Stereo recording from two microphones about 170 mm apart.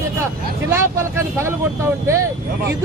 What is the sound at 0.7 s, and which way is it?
Speech, 15° right (ahead or behind).